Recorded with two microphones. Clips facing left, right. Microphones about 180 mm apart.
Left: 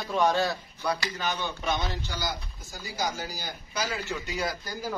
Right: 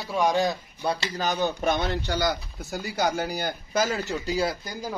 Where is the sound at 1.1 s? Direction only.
40° right (ahead or behind); by 5.0 s 20° right (ahead or behind).